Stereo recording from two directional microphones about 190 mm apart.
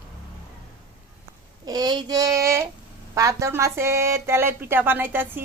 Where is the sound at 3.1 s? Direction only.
15° right (ahead or behind).